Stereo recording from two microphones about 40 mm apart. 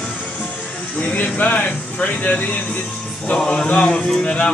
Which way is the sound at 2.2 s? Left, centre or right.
Left.